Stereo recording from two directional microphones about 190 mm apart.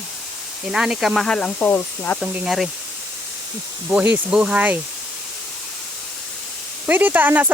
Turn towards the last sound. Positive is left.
turn(degrees=-10)  # may be behind; listen again after turning